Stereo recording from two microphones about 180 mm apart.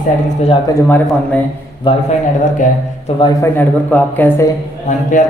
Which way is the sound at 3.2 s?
25° left (ahead or behind).